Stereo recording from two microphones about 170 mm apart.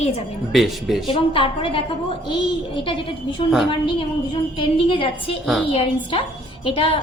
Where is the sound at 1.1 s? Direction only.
30° left (ahead or behind).